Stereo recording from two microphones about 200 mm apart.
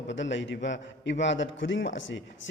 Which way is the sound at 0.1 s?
65° left (ahead or behind).